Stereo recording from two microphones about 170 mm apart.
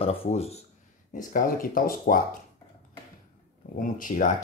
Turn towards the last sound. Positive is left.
turn(degrees=50)  # may be behind; listen again after turning